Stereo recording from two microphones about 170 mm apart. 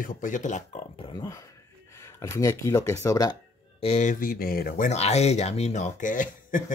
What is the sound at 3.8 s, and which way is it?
Speech, 45° left (ahead or behind).